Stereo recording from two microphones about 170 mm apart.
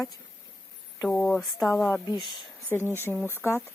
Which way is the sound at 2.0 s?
25° left (ahead or behind).